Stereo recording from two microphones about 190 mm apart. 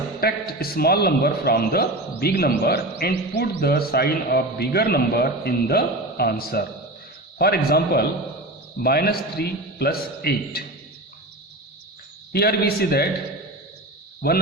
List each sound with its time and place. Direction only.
0.2 s a man's voice: 55° left (ahead or behind)
12.3 s a man's voice: 55° left (ahead or behind)